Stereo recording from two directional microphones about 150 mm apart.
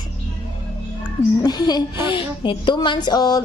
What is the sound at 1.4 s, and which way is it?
A woman's voice, 25° left (ahead or behind).